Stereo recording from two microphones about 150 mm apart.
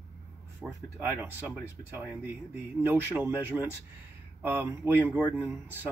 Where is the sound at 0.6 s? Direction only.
10° right (ahead or behind).